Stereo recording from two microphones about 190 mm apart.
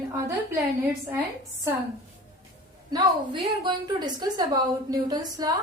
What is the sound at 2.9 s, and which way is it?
A woman's voice, 25° right (ahead or behind).